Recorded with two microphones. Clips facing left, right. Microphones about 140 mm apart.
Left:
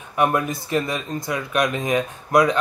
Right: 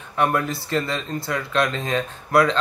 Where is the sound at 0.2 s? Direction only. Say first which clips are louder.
Left 1 dB; 20° left (ahead or behind).